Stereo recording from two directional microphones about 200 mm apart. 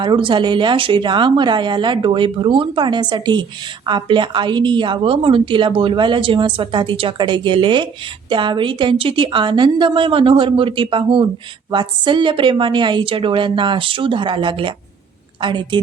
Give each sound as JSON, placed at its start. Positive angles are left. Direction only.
{"t": 0.0, "sound": "a woman's voice", "side_deg": -25}